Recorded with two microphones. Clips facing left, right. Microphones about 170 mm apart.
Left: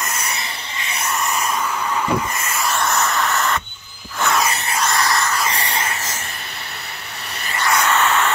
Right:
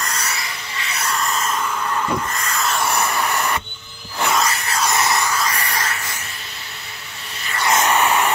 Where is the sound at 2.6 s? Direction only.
5° left (ahead or behind).